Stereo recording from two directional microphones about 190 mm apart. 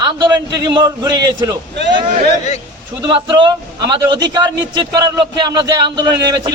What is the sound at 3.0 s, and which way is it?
A man's voice, 25° right (ahead or behind).